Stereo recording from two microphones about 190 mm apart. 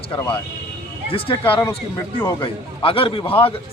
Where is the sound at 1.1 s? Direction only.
25° left (ahead or behind).